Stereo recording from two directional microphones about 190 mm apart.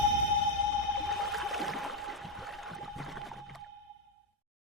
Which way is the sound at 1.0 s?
Centre (ahead or behind).